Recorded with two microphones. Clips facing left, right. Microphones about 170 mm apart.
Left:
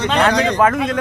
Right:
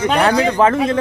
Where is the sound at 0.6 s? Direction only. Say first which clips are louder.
Right 2 dB; 30° right (ahead or behind).